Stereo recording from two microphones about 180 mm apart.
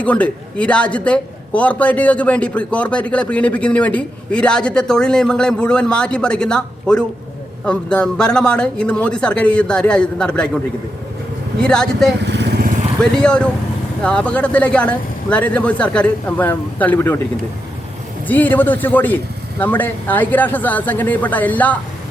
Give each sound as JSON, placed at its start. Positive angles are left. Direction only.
{"t": 0.0, "sound": "a man's voice", "side_deg": 5}
{"t": 11.6, "sound": "a man's voice", "side_deg": 5}
{"t": 12.2, "sound": "vehicle", "side_deg": -70}
{"t": 13.0, "sound": "a man's voice", "side_deg": 5}
{"t": 18.3, "sound": "a man's voice", "side_deg": 10}